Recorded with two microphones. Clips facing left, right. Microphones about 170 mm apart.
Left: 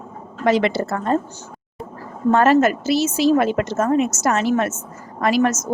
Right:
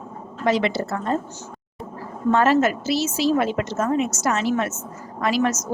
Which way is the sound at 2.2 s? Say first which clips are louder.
Left 3 dB; 50° left (ahead or behind).